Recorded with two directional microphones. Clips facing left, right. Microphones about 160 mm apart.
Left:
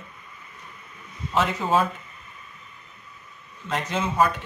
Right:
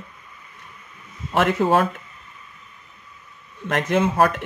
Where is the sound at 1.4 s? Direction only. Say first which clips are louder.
Right 4 dB; 70° right (ahead or behind).